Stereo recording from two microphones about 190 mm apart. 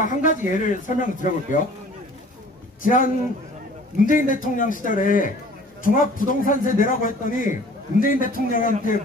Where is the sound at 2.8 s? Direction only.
45° left (ahead or behind).